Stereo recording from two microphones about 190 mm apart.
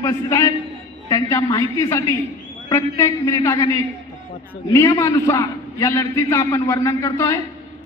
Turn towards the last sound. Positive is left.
turn(degrees=15)  # may be behind; listen again after turning